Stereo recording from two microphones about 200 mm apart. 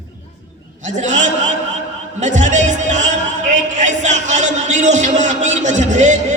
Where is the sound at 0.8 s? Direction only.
35° right (ahead or behind).